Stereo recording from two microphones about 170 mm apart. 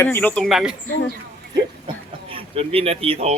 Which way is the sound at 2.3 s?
35° right (ahead or behind).